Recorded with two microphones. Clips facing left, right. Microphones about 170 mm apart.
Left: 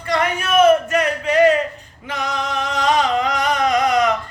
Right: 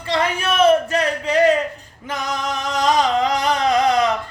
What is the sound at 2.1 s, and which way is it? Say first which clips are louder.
Music: left 1 dB; 45° right (ahead or behind).